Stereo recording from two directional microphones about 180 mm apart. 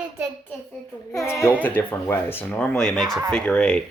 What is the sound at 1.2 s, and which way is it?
Speech, 15° left (ahead or behind).